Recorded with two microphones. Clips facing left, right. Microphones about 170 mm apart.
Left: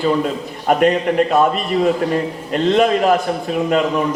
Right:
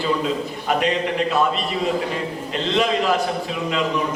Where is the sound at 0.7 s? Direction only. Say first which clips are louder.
Left 7 dB; 50° left (ahead or behind).